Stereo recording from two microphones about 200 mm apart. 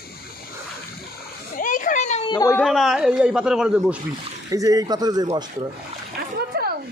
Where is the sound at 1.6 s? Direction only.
40° left (ahead or behind).